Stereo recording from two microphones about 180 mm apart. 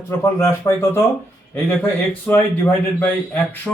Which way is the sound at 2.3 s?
10° left (ahead or behind).